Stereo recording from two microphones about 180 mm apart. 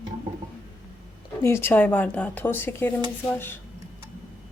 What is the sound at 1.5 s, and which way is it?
Speech, 15° left (ahead or behind).